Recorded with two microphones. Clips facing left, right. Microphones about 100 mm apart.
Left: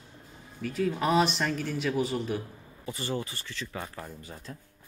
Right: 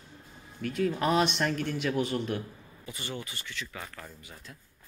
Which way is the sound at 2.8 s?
35° left (ahead or behind).